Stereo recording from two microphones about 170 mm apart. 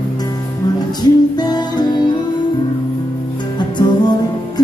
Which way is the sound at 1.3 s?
25° left (ahead or behind).